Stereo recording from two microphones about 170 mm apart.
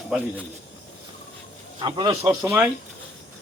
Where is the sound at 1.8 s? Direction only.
25° right (ahead or behind).